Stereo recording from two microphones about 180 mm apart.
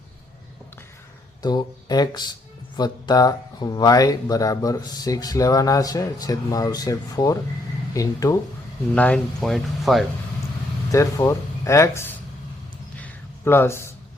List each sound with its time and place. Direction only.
1.4 s speech: 20° left (ahead or behind)
9.0 s speech: 5° left (ahead or behind)
10.9 s speech: 15° left (ahead or behind)
13.0 s a sound: 15° left (ahead or behind)